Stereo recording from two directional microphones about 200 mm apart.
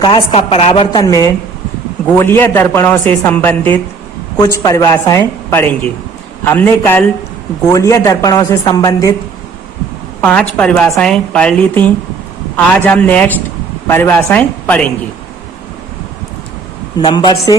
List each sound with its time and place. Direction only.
0.1 s a woman's voice: 30° left (ahead or behind)
10.2 s a woman's voice: 5° left (ahead or behind)
17.0 s a woman's voice: 20° left (ahead or behind)